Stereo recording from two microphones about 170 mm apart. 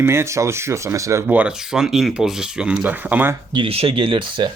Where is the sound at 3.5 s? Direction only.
30° right (ahead or behind).